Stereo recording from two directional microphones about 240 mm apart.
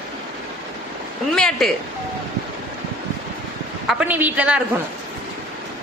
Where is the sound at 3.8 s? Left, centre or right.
Centre.